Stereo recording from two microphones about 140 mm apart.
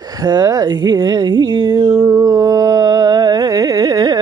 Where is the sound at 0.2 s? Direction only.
25° right (ahead or behind).